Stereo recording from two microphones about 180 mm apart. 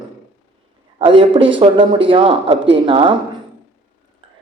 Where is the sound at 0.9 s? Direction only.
30° right (ahead or behind).